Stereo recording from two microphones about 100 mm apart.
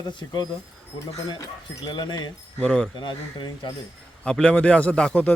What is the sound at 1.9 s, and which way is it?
Speech, 45° left (ahead or behind).